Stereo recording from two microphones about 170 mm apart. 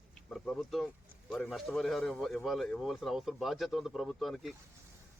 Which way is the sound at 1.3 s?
Centre (ahead or behind).